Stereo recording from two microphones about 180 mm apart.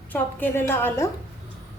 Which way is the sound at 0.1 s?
10° left (ahead or behind).